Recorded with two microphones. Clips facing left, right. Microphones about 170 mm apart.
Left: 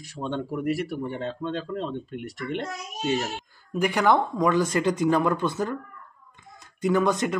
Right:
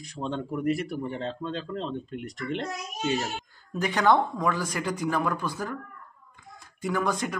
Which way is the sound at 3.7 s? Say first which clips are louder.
Left 1 dB; 10° left (ahead or behind).